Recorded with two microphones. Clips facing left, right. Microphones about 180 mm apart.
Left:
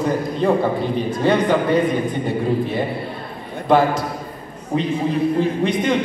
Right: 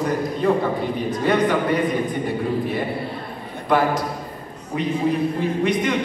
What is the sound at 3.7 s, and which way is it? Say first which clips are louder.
A man's voice: left 3 dB; 30° left (ahead or behind).